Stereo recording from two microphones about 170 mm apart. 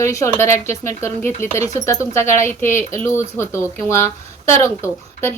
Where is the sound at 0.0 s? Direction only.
15° left (ahead or behind).